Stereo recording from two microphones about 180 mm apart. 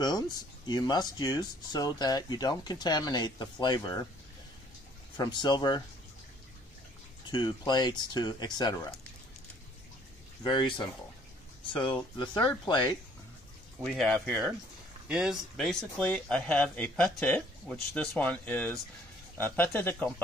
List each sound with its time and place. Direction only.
0.7 s speech: 25° left (ahead or behind)
5.1 s speech: 20° left (ahead or behind)
7.2 s speech: 25° left (ahead or behind)
10.4 s speech: 25° left (ahead or behind)
13.8 s speech: 5° left (ahead or behind)